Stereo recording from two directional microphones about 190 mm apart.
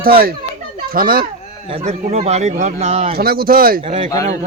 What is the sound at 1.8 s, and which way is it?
Speech, 35° right (ahead or behind).